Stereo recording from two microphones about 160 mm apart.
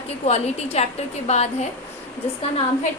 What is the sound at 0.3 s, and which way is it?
A woman's voice, 40° left (ahead or behind).